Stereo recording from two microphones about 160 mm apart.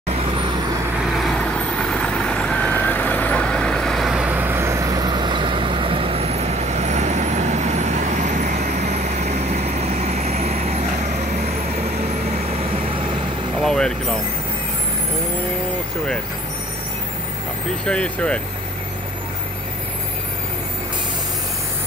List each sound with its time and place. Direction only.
0.9 s vehicle: centre (ahead or behind); by 10.9 s 40° right (ahead or behind)
13.6 s vehicle: 5° left (ahead or behind)
17.8 s speech: 5° left (ahead or behind)